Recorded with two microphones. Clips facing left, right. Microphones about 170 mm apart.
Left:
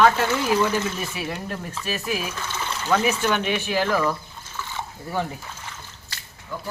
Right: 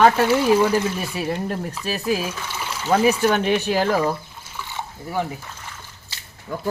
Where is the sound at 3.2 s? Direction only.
40° right (ahead or behind).